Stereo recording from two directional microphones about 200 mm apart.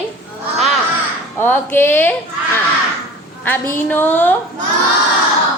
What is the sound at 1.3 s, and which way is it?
Speech, 10° left (ahead or behind).